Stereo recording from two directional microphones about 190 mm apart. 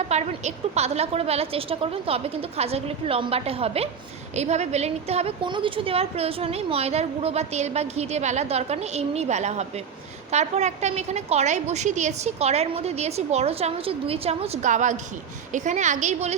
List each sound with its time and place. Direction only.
0.1 s a woman's voice: 35° right (ahead or behind)